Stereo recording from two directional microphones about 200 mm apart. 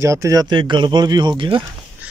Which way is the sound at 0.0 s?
15° right (ahead or behind).